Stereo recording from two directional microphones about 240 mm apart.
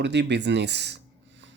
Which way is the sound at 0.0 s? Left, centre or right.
Right.